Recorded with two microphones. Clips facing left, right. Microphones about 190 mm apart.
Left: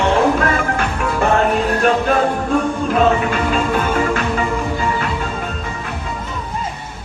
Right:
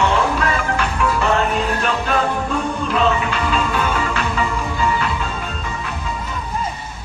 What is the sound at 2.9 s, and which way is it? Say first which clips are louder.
Music: left 3 dB; 45° left (ahead or behind).